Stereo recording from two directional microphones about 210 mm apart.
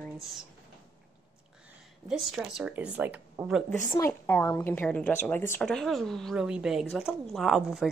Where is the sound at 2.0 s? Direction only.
5° right (ahead or behind).